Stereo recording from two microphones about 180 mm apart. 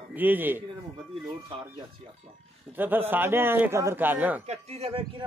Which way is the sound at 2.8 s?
10° right (ahead or behind).